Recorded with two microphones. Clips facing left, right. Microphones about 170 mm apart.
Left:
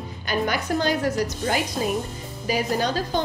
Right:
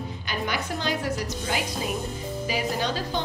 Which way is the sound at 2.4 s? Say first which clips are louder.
Left 5 dB; 45° left (ahead or behind).